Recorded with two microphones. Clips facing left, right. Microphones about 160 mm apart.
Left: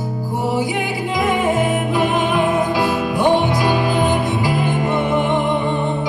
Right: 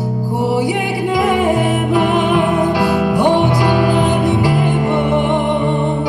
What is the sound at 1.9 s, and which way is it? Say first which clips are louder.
Music: right 4 dB; 65° right (ahead or behind).